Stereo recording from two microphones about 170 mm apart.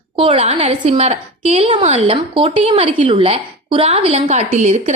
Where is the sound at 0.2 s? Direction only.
35° right (ahead or behind).